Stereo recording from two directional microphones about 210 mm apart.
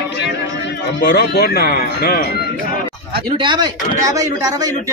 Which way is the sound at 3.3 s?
20° right (ahead or behind).